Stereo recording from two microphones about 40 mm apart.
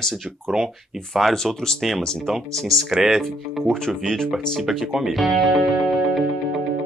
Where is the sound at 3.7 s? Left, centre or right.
Centre.